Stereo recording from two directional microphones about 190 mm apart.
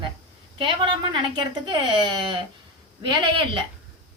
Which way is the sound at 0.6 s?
25° right (ahead or behind).